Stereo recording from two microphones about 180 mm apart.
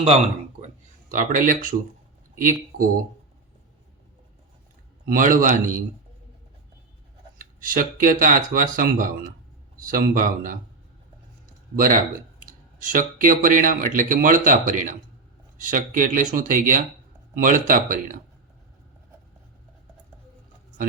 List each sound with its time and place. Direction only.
1.1 s speech: 50° right (ahead or behind)
5.0 s speech: 50° right (ahead or behind)
7.3 s speech: 50° right (ahead or behind)
12.8 s speech: 50° right (ahead or behind)